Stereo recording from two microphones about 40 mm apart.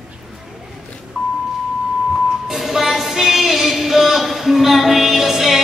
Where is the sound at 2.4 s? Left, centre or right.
Centre.